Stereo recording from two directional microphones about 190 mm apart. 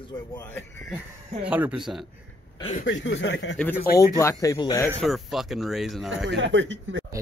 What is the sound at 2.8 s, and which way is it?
Speech, 70° left (ahead or behind).